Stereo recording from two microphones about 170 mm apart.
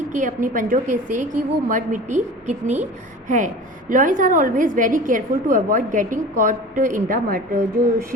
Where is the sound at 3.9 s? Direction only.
50° right (ahead or behind).